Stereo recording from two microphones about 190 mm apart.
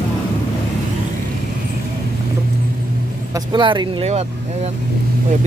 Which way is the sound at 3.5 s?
25° right (ahead or behind).